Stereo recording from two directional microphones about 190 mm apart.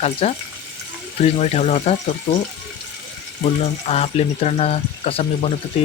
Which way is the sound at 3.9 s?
35° left (ahead or behind).